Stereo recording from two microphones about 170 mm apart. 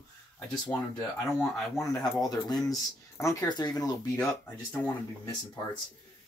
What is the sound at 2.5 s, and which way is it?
Speech, 20° left (ahead or behind).